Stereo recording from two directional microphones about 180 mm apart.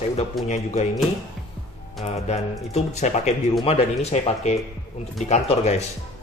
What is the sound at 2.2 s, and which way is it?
A man's voice, 40° left (ahead or behind).